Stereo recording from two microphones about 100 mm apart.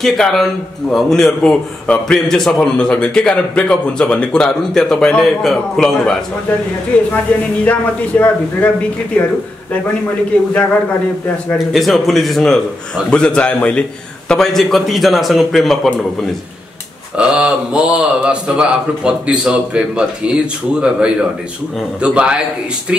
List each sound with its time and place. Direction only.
0.0 s a man's voice: 5° left (ahead or behind)
6.9 s a man's voice: 10° left (ahead or behind)
11.5 s a man's voice: centre (ahead or behind)
17.2 s a man's voice: 10° right (ahead or behind)